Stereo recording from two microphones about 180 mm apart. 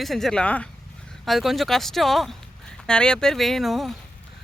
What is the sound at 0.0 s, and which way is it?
Speech, centre (ahead or behind).